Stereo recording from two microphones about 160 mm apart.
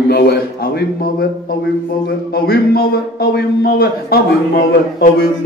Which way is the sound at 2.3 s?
70° left (ahead or behind).